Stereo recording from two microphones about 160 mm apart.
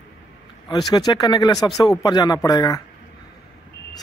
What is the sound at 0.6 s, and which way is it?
Speech, 25° left (ahead or behind).